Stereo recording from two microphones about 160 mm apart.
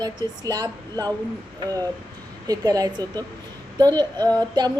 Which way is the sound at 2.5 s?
25° right (ahead or behind).